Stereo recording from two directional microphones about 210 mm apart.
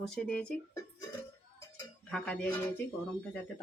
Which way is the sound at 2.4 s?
10° left (ahead or behind).